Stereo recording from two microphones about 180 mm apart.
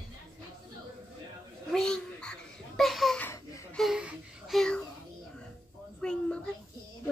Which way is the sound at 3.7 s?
Centre (ahead or behind).